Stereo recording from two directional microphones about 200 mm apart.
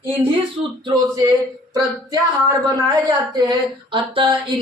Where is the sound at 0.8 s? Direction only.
20° right (ahead or behind).